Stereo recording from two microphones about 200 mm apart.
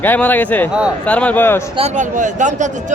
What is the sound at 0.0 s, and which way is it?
Speech, 10° left (ahead or behind).